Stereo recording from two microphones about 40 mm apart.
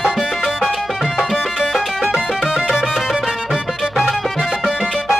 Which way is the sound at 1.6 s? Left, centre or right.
Centre.